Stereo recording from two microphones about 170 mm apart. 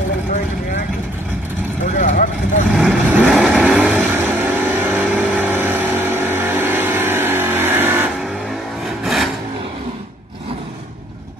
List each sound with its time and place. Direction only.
2.0 s vehicle: 50° left (ahead or behind)
2.7 s vehicle: 5° right (ahead or behind)
8.8 s vehicle: centre (ahead or behind)